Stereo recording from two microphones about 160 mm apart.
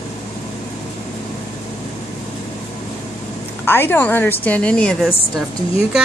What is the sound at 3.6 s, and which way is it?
Speech, 15° left (ahead or behind).